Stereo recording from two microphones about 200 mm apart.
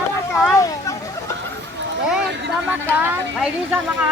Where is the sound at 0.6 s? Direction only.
15° left (ahead or behind).